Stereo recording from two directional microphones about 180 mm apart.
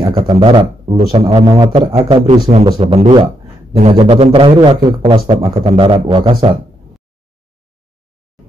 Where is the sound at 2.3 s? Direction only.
40° right (ahead or behind).